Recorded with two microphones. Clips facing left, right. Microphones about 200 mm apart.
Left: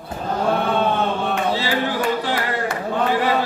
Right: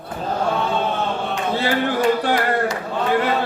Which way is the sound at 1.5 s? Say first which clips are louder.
Right 2 dB; 55° right (ahead or behind).